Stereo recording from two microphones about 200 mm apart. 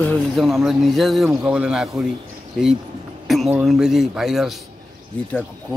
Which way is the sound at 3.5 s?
5° right (ahead or behind).